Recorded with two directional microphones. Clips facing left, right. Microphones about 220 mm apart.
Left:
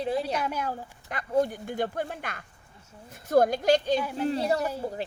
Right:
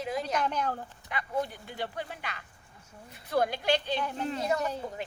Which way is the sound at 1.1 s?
45° left (ahead or behind).